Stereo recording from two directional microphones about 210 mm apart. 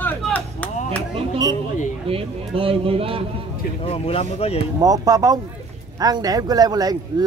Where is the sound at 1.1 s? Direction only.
25° right (ahead or behind).